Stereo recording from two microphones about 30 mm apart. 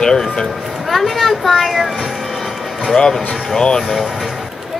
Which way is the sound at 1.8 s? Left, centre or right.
Centre.